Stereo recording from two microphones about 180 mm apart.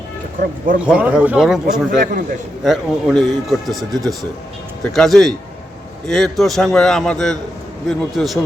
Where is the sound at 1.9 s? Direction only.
45° right (ahead or behind).